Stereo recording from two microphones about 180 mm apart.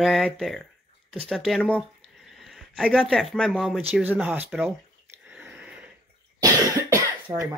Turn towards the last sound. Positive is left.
turn(degrees=-20)  # may be behind; listen again after turning